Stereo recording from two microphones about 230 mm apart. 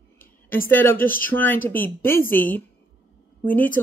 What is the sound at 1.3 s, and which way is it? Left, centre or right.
Speech, centre.